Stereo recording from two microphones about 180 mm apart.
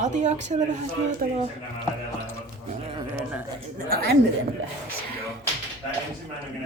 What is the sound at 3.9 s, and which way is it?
Speech, 60° right (ahead or behind).